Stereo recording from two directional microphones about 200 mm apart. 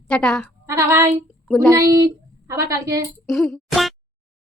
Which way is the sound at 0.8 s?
15° right (ahead or behind).